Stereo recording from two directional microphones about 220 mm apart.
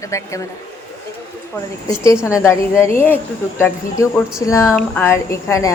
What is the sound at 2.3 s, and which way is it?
A woman's voice, 15° left (ahead or behind).